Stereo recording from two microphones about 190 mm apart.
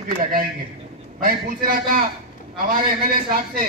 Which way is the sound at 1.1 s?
50° right (ahead or behind).